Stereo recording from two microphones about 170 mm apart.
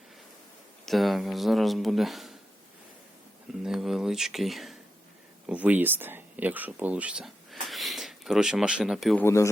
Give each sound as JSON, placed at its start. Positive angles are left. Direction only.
{"t": 0.9, "sound": "speech", "side_deg": 0}
{"t": 3.6, "sound": "speech", "side_deg": 0}
{"t": 9.2, "sound": "speech", "side_deg": 15}